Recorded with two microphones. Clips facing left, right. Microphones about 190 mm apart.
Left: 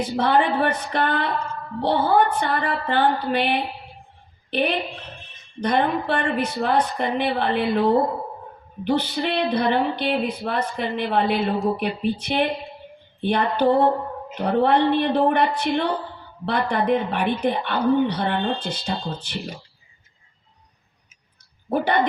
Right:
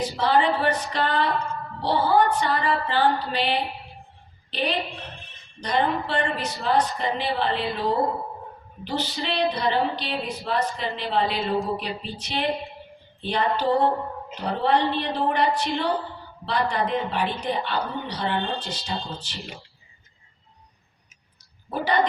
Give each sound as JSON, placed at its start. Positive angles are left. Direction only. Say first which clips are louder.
{"t": 0.0, "sound": "a woman's voice", "louder": "left 2 dB", "side_deg": 55}
{"t": 21.7, "sound": "a woman's voice", "louder": "left 3 dB", "side_deg": 55}